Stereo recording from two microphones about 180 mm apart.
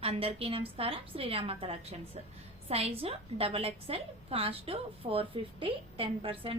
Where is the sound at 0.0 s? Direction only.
35° right (ahead or behind).